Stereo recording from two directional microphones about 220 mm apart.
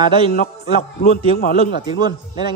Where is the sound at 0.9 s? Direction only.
40° left (ahead or behind).